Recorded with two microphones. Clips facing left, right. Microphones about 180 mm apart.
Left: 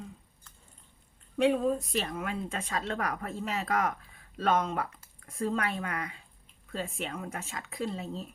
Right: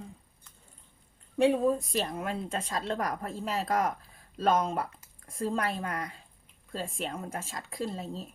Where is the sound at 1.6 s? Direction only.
40° right (ahead or behind).